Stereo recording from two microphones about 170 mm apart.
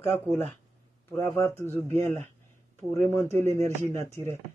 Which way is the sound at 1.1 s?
15° left (ahead or behind).